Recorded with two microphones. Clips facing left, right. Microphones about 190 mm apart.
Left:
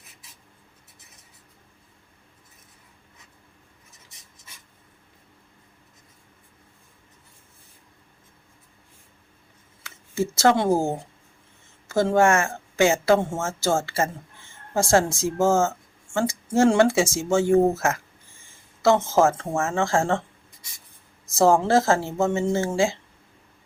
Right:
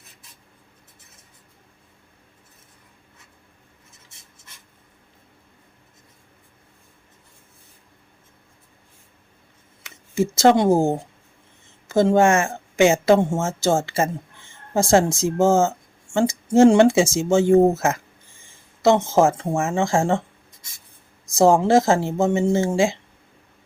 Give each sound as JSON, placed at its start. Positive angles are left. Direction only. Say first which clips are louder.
{"t": 9.8, "sound": "speech", "louder": "right 4 dB", "side_deg": -20}
{"t": 21.3, "sound": "speech", "louder": "right 3 dB", "side_deg": -15}